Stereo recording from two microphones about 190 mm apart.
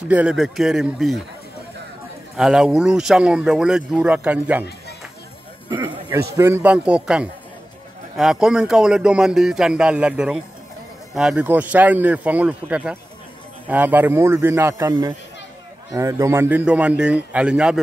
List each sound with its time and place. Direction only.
0.1 s speech: 5° right (ahead or behind)
2.3 s speech: 5° right (ahead or behind)
5.9 s a sound: 20° right (ahead or behind)
6.3 s a man's voice: 15° right (ahead or behind)